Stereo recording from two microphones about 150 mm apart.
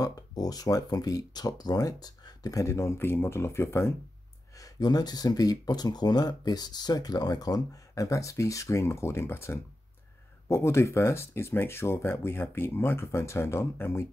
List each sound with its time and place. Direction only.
0.0 s speech: 25° left (ahead or behind)